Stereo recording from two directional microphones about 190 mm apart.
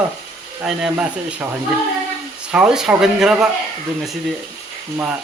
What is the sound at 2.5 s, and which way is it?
Speech, 5° right (ahead or behind).